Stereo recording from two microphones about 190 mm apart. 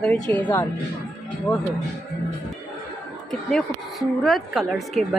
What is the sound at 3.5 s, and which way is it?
A woman's voice, centre (ahead or behind).